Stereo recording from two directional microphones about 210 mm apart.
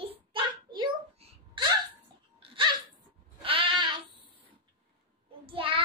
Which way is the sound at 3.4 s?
25° right (ahead or behind).